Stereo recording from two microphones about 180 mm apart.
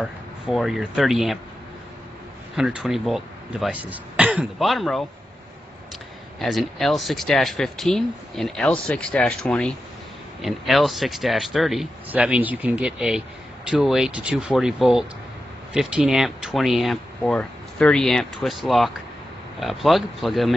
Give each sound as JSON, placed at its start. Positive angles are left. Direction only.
{"t": 0.0, "sound": "speech", "side_deg": 0}
{"t": 2.5, "sound": "speech", "side_deg": -5}
{"t": 6.4, "sound": "speech", "side_deg": 0}